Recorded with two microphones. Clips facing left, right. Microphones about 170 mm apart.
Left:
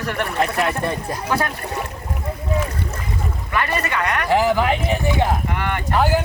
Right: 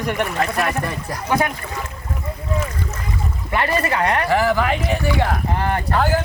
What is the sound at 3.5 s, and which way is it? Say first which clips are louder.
Speech: right 3 dB; 30° right (ahead or behind).